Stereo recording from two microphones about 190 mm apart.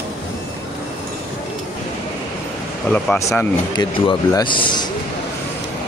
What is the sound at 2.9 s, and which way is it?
Speech, 10° left (ahead or behind).